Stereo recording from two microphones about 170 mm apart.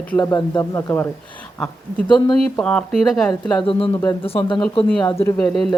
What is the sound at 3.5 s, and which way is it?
Speech, 30° left (ahead or behind).